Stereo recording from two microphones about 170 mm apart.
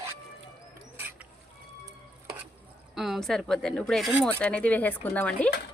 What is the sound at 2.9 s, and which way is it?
Speech, centre (ahead or behind).